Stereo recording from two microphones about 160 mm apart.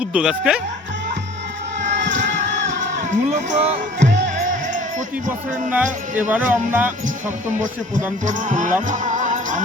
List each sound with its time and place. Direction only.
0.0 s speech: 5° right (ahead or behind)
1.8 s music: 50° right (ahead or behind)
5.7 s speech: 10° right (ahead or behind)
8.2 s speech: 50° right (ahead or behind)
8.9 s music: 50° right (ahead or behind)